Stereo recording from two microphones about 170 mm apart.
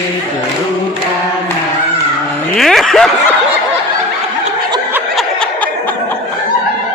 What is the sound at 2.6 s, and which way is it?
Snicker, centre (ahead or behind).